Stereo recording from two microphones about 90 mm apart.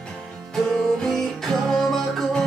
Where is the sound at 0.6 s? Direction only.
5° left (ahead or behind).